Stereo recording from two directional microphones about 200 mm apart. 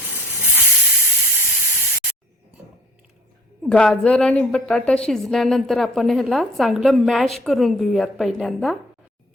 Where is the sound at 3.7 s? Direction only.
5° left (ahead or behind).